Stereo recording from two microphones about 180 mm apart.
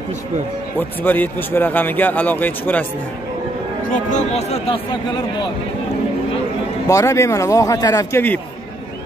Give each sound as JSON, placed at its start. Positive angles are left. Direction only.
{"t": 0.7, "sound": "a man's voice", "side_deg": 10}
{"t": 3.9, "sound": "speech", "side_deg": 40}
{"t": 6.9, "sound": "a man's voice", "side_deg": 15}